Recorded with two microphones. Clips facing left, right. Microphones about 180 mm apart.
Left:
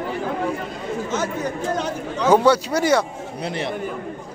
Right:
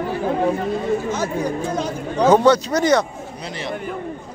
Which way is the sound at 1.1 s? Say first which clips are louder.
Right 2 dB; 10° right (ahead or behind).